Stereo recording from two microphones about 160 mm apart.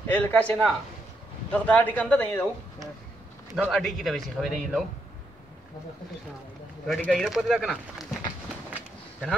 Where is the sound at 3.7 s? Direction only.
Centre (ahead or behind).